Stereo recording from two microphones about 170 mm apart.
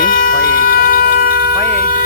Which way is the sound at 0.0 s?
55° left (ahead or behind).